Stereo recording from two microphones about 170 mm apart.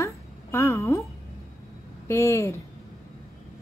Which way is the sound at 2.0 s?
15° left (ahead or behind).